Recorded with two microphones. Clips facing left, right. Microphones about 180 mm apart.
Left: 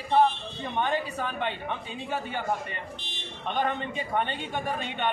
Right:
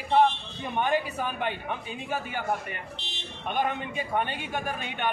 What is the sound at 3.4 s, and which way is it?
A man's voice, 10° right (ahead or behind).